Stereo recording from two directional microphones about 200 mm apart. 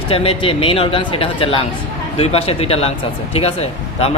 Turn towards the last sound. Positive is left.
turn(degrees=30)  # may be behind; listen again after turning